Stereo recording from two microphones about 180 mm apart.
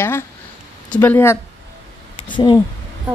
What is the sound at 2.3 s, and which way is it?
Speech, 25° left (ahead or behind).